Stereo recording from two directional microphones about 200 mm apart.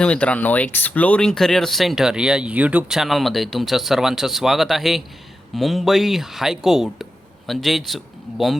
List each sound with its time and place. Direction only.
0.0 s speech: 5° left (ahead or behind)